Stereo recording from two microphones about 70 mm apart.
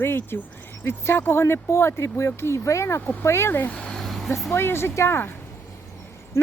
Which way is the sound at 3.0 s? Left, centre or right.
Left.